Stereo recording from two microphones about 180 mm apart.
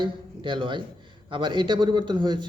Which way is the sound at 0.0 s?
25° right (ahead or behind).